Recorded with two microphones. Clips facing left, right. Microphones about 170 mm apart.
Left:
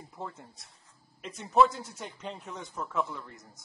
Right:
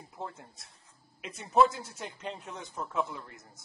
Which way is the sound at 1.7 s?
Centre (ahead or behind).